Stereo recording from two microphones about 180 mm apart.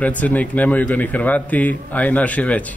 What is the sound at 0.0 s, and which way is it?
A man's voice, 10° left (ahead or behind).